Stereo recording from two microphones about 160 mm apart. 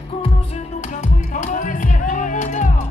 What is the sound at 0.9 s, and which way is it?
Music, 50° left (ahead or behind).